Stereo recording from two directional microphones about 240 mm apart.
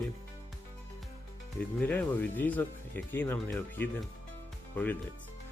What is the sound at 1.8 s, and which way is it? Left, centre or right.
Speech, centre.